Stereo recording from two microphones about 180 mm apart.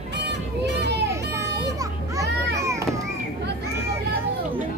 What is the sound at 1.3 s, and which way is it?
Children playing, 15° right (ahead or behind).